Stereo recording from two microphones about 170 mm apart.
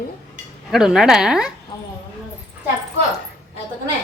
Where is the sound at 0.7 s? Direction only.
5° right (ahead or behind).